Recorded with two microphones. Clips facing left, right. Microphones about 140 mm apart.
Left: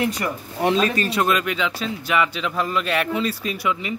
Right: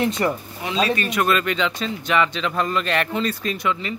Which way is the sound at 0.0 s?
25° right (ahead or behind).